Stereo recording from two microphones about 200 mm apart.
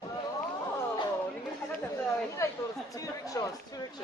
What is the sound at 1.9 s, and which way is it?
Chatter, 15° left (ahead or behind).